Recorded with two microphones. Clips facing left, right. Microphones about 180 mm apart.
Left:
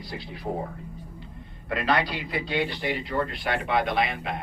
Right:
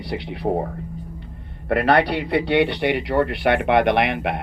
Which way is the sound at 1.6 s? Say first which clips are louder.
Right 8 dB; 65° right (ahead or behind).